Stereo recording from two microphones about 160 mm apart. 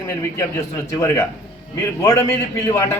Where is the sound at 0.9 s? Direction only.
15° left (ahead or behind).